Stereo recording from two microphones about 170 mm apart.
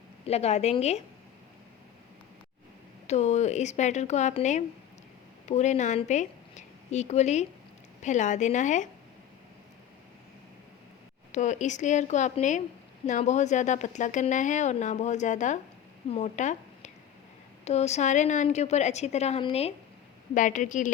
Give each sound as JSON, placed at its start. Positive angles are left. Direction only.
{"t": 0.3, "sound": "a woman's voice", "side_deg": 40}
{"t": 3.1, "sound": "a woman's voice", "side_deg": 40}
{"t": 11.3, "sound": "a woman's voice", "side_deg": 45}
{"t": 20.3, "sound": "speech", "side_deg": 50}